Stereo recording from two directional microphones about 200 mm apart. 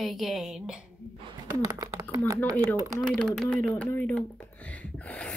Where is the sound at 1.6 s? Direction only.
15° right (ahead or behind).